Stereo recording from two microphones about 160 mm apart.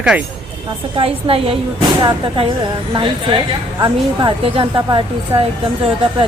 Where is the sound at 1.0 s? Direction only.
35° right (ahead or behind).